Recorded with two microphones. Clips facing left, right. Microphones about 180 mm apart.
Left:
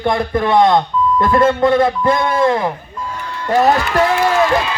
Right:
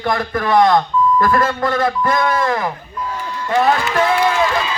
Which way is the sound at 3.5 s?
40° left (ahead or behind).